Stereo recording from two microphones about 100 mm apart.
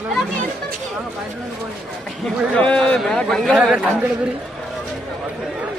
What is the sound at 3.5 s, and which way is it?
Speech, 10° right (ahead or behind).